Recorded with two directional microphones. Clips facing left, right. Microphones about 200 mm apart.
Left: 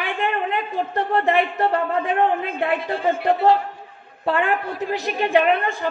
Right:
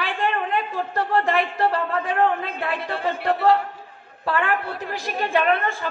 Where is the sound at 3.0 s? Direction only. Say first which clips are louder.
Left 2 dB; 20° left (ahead or behind).